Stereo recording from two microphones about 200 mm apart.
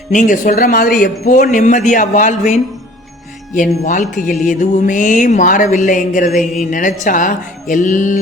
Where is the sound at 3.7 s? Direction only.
40° left (ahead or behind).